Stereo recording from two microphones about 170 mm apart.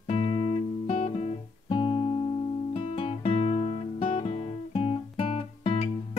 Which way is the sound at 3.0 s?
35° left (ahead or behind).